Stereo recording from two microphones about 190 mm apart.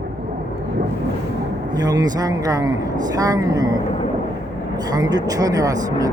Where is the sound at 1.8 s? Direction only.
20° right (ahead or behind).